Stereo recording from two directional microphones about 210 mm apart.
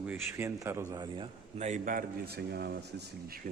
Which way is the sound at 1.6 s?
35° right (ahead or behind).